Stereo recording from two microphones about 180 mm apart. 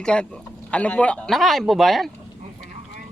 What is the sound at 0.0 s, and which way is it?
Speech, 5° left (ahead or behind).